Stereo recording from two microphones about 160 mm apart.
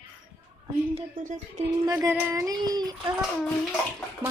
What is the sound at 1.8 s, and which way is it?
Speech, 20° right (ahead or behind).